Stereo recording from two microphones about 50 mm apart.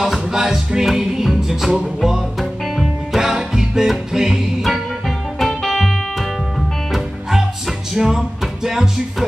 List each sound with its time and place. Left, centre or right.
0.0 s music: centre
5.4 s music: centre